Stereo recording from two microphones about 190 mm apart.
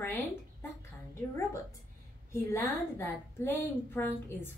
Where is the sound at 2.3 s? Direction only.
15° left (ahead or behind).